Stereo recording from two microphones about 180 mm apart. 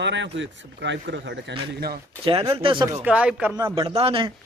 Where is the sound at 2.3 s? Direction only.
30° right (ahead or behind).